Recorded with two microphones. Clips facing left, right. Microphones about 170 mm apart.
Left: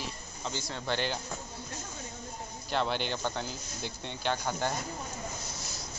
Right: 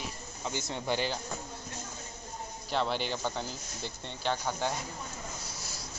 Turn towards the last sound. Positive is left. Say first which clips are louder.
# even
turn(degrees=0)  # may be behind; listen again after turning